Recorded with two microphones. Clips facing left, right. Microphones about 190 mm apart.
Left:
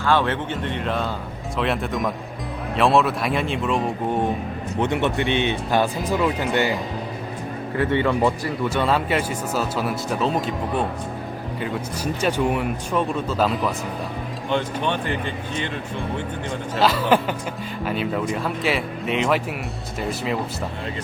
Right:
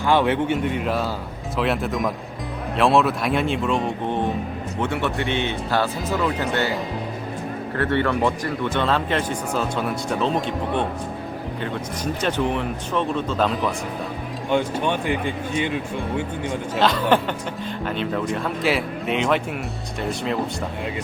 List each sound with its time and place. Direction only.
0.0 s speech: 15° right (ahead or behind); by 4.2 s centre (ahead or behind)
4.8 s speech: 20° left (ahead or behind)
7.8 s speech: 15° left (ahead or behind)
14.5 s speech: 10° right (ahead or behind)
16.7 s speech: 5° left (ahead or behind)